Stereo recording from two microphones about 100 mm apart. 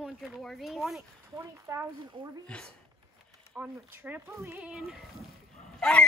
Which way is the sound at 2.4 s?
10° left (ahead or behind).